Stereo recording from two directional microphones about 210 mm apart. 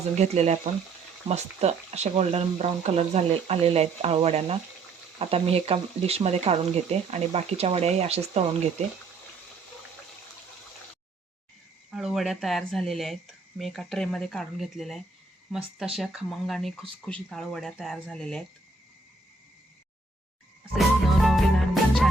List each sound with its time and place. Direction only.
0.2 s speech: 30° right (ahead or behind)
11.9 s speech: centre (ahead or behind)
20.7 s music: centre (ahead or behind)